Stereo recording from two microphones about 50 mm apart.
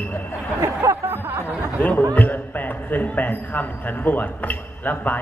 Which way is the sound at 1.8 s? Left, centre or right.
Left.